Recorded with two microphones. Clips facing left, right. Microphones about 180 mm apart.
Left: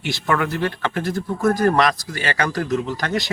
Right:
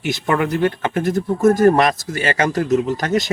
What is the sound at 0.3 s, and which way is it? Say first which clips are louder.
Speech: right 4 dB; 20° right (ahead or behind).